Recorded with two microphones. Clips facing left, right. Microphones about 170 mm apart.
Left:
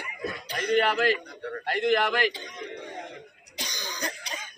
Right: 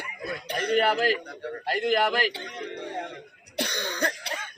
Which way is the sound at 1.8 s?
10° right (ahead or behind).